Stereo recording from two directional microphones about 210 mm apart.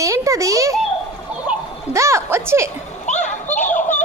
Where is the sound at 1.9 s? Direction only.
15° right (ahead or behind).